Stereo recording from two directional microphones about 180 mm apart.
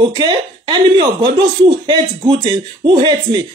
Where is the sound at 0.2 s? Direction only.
25° right (ahead or behind).